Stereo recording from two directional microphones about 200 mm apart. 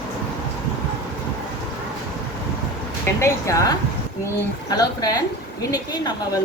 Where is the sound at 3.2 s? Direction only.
15° left (ahead or behind).